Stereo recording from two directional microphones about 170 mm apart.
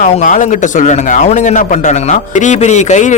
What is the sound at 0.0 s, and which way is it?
A man's voice, 50° left (ahead or behind).